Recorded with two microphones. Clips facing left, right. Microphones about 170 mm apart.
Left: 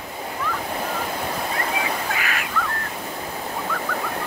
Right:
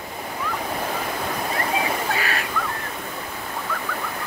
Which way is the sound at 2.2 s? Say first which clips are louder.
Right 2 dB; 35° right (ahead or behind).